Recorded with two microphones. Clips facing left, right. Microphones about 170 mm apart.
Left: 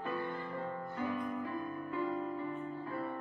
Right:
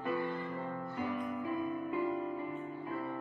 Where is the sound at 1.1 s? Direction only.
15° right (ahead or behind).